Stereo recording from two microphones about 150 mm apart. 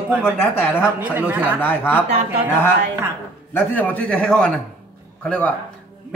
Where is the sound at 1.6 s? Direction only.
15° left (ahead or behind).